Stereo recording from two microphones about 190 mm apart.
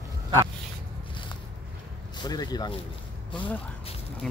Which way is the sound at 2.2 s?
20° left (ahead or behind).